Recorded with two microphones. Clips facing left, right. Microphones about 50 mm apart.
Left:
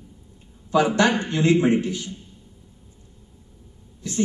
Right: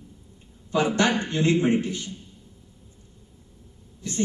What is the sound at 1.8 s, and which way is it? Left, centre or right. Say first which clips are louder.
Speech: left 2 dB; right.